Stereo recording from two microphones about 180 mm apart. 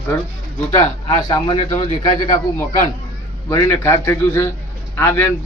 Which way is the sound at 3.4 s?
15° left (ahead or behind).